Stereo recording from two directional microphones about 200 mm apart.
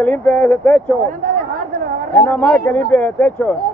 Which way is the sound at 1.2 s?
40° right (ahead or behind).